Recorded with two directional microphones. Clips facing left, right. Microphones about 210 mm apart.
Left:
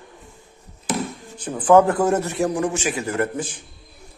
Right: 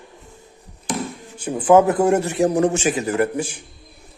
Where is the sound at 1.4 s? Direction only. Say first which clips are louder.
Right 1 dB; 10° right (ahead or behind).